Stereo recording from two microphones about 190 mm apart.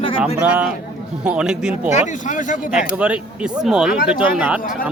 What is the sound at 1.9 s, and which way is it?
Speech, 40° left (ahead or behind).